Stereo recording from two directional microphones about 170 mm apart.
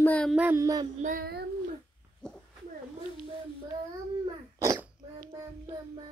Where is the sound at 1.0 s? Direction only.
60° right (ahead or behind).